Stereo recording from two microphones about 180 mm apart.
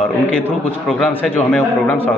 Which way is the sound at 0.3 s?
5° left (ahead or behind).